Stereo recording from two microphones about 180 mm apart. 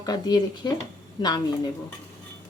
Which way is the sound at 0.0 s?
20° left (ahead or behind).